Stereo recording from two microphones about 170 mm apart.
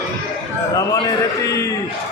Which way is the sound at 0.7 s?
20° left (ahead or behind).